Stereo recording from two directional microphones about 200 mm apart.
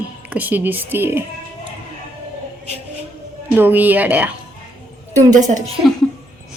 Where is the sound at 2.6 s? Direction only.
30° right (ahead or behind).